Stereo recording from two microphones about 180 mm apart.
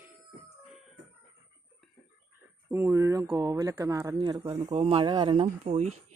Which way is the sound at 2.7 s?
15° right (ahead or behind).